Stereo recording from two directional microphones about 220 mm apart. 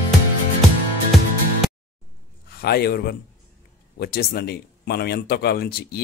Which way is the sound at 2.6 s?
45° left (ahead or behind).